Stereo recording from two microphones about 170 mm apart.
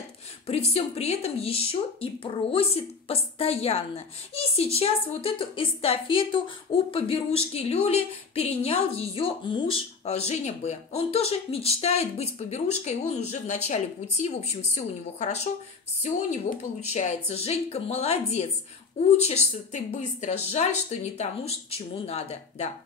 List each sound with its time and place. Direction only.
0.5 s a woman's voice: 35° left (ahead or behind)